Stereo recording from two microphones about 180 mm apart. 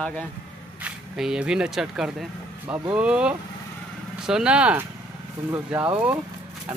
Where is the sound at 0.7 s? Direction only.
5° right (ahead or behind).